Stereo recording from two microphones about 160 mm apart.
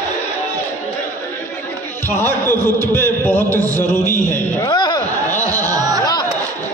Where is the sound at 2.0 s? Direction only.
15° left (ahead or behind).